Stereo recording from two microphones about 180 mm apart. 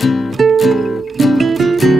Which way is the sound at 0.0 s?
Centre (ahead or behind).